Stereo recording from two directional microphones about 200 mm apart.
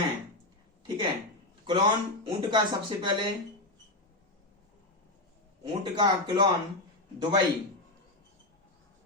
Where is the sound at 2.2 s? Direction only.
25° right (ahead or behind).